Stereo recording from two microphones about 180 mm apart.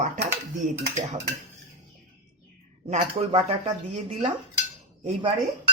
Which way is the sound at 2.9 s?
35° right (ahead or behind).